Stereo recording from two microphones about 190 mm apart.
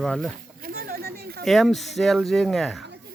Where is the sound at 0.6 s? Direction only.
50° right (ahead or behind).